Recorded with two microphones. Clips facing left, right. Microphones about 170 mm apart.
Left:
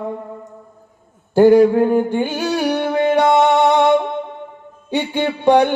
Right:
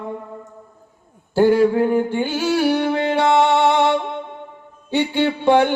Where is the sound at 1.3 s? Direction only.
15° left (ahead or behind).